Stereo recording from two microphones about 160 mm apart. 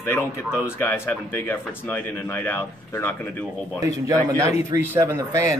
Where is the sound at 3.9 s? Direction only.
20° right (ahead or behind).